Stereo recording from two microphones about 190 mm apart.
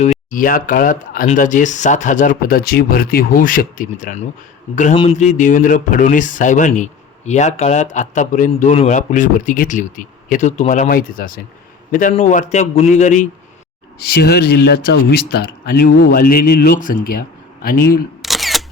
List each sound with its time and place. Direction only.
0.0 s a man's voice: 40° left (ahead or behind)
14.0 s speech: 55° left (ahead or behind)
18.2 s single-lens reflex camera: centre (ahead or behind)